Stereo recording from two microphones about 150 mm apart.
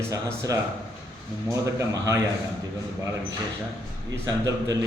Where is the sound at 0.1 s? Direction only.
20° right (ahead or behind).